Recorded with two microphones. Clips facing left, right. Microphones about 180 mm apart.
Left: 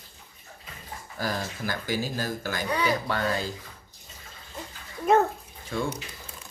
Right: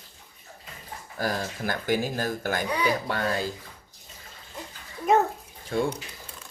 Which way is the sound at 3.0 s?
50° right (ahead or behind).